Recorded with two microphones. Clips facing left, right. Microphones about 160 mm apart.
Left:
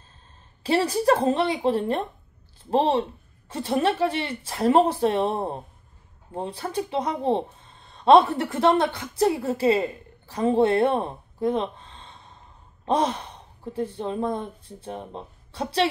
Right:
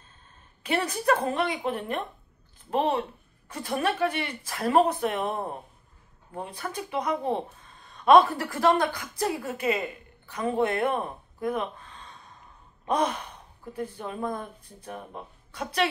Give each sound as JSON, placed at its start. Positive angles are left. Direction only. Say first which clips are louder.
{"t": 0.7, "sound": "a woman's voice", "louder": "left 5 dB", "side_deg": 30}